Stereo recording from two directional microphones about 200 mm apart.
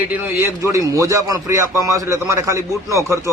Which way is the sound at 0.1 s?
10° right (ahead or behind).